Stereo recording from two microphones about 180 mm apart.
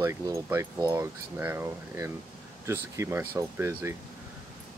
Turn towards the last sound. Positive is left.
turn(degrees=-15)  # may be behind; listen again after turning